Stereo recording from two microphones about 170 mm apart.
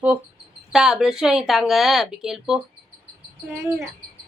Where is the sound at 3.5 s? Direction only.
15° right (ahead or behind).